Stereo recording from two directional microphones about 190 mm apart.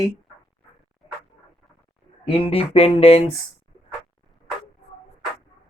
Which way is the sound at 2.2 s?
30° left (ahead or behind).